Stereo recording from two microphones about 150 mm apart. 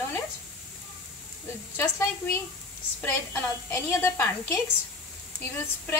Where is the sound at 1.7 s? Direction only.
15° left (ahead or behind).